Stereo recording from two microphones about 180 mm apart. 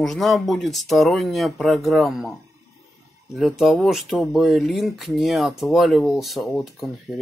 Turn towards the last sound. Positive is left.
turn(degrees=0)  # may be behind; listen again after turning